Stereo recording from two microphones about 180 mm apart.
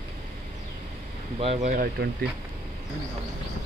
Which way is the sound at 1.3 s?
35° right (ahead or behind).